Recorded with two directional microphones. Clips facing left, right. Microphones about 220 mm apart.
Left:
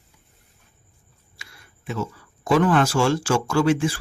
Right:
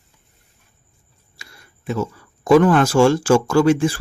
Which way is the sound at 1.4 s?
40° right (ahead or behind).